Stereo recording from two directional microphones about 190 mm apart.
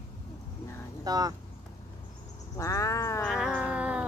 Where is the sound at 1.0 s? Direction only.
20° right (ahead or behind).